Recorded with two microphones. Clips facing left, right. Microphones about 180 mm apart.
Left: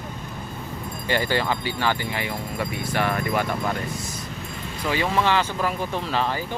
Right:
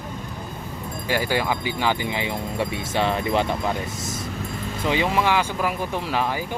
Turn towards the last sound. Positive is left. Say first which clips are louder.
# right 1 dB
turn(degrees=-10)  # may be behind; listen again after turning